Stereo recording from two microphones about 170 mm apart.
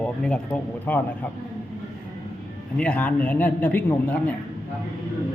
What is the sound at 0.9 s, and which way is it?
Speech, 10° left (ahead or behind).